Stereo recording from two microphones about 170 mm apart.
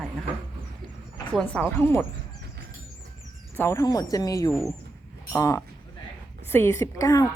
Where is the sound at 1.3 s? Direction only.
10° left (ahead or behind).